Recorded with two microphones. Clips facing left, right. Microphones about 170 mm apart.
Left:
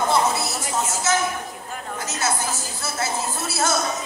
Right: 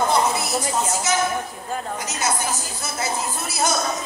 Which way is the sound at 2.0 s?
15° right (ahead or behind).